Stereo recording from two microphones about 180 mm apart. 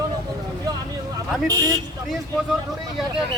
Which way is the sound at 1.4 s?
20° right (ahead or behind).